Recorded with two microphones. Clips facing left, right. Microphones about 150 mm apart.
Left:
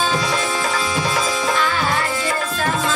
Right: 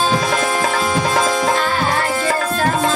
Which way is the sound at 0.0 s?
50° right (ahead or behind).